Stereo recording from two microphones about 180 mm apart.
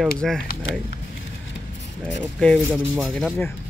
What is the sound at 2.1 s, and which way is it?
Speech, 5° left (ahead or behind).